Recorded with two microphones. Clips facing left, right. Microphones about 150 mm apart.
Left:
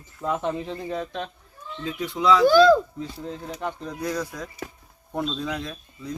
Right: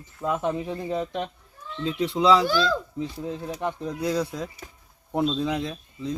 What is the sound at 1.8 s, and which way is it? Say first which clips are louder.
Speech: right 2 dB; 30° right (ahead or behind).